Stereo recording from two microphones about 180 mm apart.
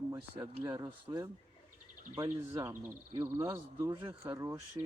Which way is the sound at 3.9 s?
30° right (ahead or behind).